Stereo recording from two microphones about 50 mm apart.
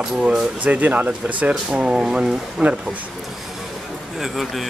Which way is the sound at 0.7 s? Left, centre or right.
Right.